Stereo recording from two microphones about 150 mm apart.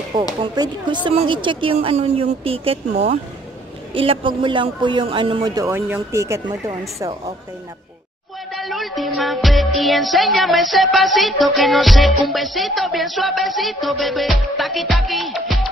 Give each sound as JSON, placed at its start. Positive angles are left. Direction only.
{"t": 0.4, "sound": "a woman's voice", "side_deg": -30}
{"t": 5.7, "sound": "speech", "side_deg": -15}
{"t": 8.5, "sound": "music", "side_deg": 0}